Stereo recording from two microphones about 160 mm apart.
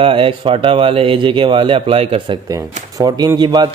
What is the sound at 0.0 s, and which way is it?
Speech, 35° right (ahead or behind).